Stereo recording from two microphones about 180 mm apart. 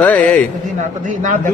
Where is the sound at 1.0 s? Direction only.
45° right (ahead or behind).